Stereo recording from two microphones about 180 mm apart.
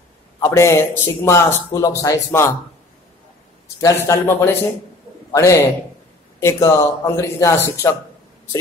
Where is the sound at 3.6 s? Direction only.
15° left (ahead or behind).